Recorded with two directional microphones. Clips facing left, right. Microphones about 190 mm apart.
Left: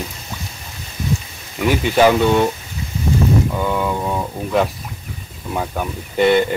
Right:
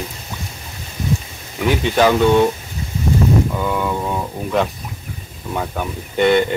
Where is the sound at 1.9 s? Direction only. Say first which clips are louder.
Even; 10° left (ahead or behind).